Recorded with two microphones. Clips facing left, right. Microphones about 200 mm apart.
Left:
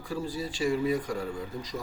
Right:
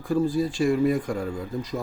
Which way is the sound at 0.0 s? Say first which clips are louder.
Right 10 dB; 50° right (ahead or behind).